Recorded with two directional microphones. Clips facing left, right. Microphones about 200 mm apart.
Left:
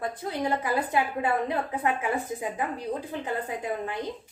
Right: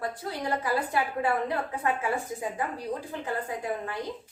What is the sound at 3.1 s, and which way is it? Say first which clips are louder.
Speech: left 1 dB; 20° left (ahead or behind).